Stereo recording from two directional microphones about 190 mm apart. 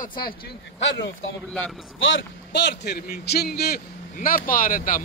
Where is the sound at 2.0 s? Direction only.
75° left (ahead or behind); by 5.0 s 45° left (ahead or behind).